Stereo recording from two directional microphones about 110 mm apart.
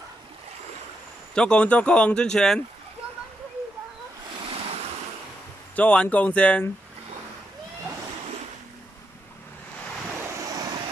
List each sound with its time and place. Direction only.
1.3 s speech: 10° left (ahead or behind)
5.8 s speech: 15° left (ahead or behind)
10.4 s vehicle: 35° right (ahead or behind)